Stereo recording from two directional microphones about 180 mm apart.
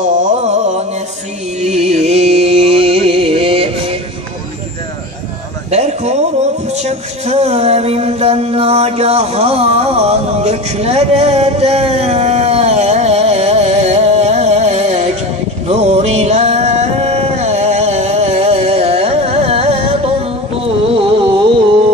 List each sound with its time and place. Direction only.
0.0 s music: 40° right (ahead or behind)
5.7 s a sound: 35° right (ahead or behind)
6.7 s speech: 35° right (ahead or behind)
15.7 s music: 35° right (ahead or behind)